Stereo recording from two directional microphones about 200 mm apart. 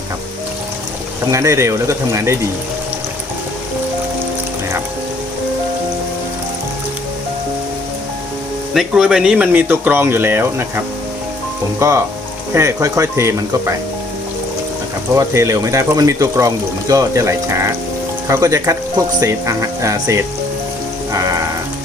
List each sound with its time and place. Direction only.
1.3 s speech: 15° right (ahead or behind)
8.7 s speech: centre (ahead or behind)
15.1 s speech: 15° right (ahead or behind)
21.1 s music: 15° right (ahead or behind)